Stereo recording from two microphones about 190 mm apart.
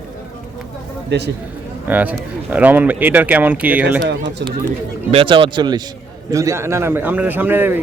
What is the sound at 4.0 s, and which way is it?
Speech, 65° right (ahead or behind).